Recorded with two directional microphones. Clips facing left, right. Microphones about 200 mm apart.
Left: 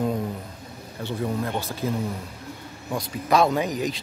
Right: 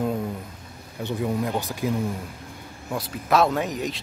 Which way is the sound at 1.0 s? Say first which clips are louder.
Right 2 dB; 10° right (ahead or behind).